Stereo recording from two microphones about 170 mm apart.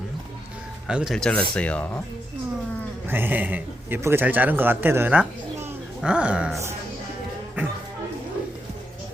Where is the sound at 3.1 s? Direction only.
10° right (ahead or behind).